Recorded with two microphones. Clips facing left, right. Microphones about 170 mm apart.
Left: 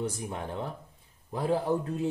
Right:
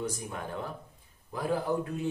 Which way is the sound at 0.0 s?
25° left (ahead or behind).